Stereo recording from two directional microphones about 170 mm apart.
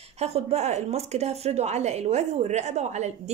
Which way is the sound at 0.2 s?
35° right (ahead or behind).